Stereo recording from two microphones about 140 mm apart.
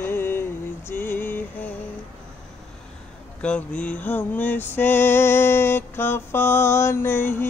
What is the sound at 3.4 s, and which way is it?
Music, 10° left (ahead or behind).